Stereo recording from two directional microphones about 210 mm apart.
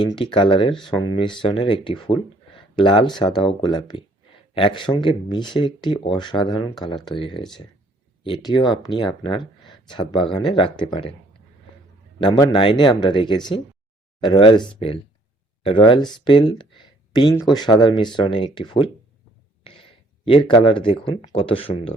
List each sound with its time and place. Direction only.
0.0 s speech: 20° left (ahead or behind)
12.2 s speech: 20° left (ahead or behind)
15.6 s speech: 25° left (ahead or behind)
20.2 s speech: 25° left (ahead or behind)